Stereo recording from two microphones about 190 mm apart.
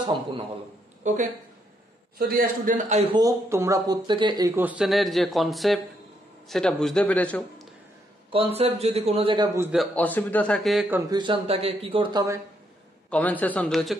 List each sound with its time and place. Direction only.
1.0 s speech: 40° right (ahead or behind)
2.1 s a man's voice: 50° right (ahead or behind); by 3.2 s 35° right (ahead or behind)
3.2 s a man's voice: 15° right (ahead or behind); by 7.6 s 5° left (ahead or behind)
8.3 s speech: 30° right (ahead or behind)
9.6 s a man's voice: 5° right (ahead or behind)
9.9 s a man's voice: 10° left (ahead or behind)
10.9 s speech: 15° right (ahead or behind)
13.1 s a man's voice: 10° left (ahead or behind)